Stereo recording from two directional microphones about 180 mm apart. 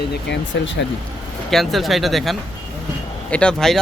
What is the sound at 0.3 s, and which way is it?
Speech, 85° left.